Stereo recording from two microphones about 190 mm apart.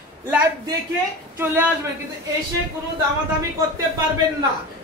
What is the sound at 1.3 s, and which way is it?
Speech, 10° right (ahead or behind).